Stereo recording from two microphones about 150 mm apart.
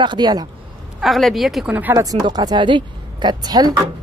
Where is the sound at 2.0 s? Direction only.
25° right (ahead or behind).